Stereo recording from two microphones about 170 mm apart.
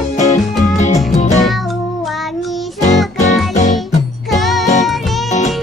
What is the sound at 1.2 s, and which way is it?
Music, 45° left (ahead or behind).